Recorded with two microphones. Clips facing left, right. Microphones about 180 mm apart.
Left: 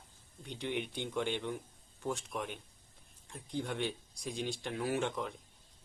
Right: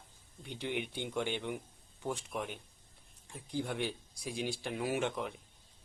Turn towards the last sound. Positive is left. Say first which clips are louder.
# even
turn(degrees=-10)  # may be behind; listen again after turning